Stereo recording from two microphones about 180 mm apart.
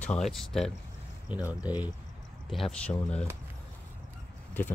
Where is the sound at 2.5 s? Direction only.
Centre (ahead or behind).